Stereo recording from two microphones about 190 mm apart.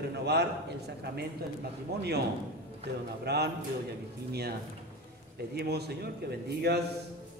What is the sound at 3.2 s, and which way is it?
Speech, 60° right (ahead or behind).